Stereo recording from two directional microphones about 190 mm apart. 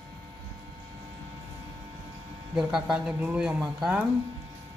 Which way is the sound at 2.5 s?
5° right (ahead or behind).